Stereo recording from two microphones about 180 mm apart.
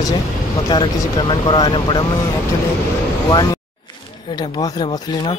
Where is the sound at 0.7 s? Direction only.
25° left (ahead or behind).